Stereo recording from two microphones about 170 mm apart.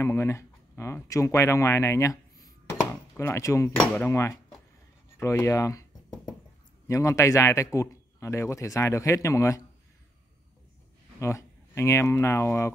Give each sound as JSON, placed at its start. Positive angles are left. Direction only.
{"t": 0.0, "sound": "a man's voice", "side_deg": 15}
{"t": 5.2, "sound": "a sound", "side_deg": 20}
{"t": 6.9, "sound": "a man's voice", "side_deg": 20}
{"t": 11.1, "sound": "speech", "side_deg": 15}